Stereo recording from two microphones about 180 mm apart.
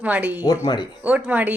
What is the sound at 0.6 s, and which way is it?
Speech, 25° left (ahead or behind).